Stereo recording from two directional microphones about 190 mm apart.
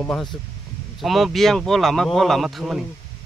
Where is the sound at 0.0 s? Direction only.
5° left (ahead or behind).